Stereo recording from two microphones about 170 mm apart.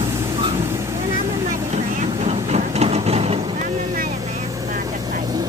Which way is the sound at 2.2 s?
40° right (ahead or behind).